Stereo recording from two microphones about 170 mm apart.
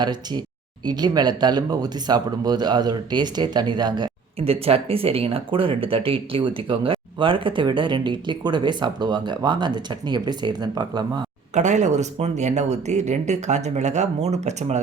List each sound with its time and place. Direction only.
0.0 s speech: 25° right (ahead or behind)
11.5 s speech: 45° right (ahead or behind)